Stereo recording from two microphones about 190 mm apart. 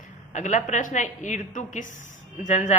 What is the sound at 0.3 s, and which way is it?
A woman's voice, 40° left (ahead or behind).